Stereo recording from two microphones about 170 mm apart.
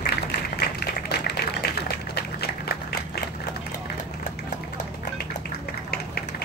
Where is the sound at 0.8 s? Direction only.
70° left (ahead or behind).